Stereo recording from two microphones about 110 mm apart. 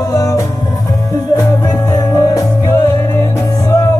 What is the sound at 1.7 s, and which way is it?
Music, 35° left (ahead or behind).